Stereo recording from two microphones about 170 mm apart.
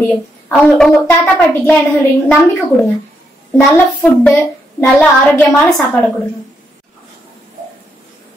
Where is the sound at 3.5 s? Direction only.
5° left (ahead or behind).